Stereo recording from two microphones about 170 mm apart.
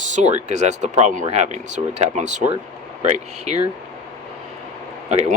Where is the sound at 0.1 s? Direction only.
45° right (ahead or behind).